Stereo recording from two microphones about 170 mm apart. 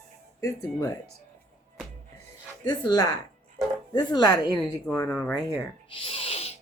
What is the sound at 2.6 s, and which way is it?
Speech, 25° left (ahead or behind).